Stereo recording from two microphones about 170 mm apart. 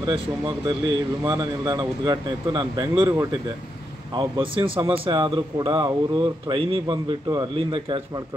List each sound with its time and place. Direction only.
0.7 s speech: 20° right (ahead or behind)